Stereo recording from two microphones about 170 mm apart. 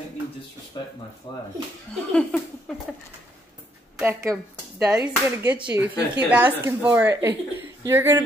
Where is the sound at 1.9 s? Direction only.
5° left (ahead or behind).